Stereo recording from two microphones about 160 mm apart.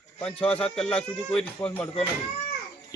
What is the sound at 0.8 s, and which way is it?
Speech, 5° left (ahead or behind).